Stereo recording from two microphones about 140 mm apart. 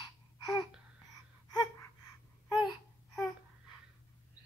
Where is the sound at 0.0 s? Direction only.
30° left (ahead or behind).